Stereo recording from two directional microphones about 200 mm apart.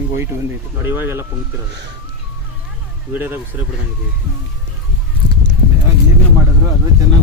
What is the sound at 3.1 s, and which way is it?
Speech, 10° right (ahead or behind).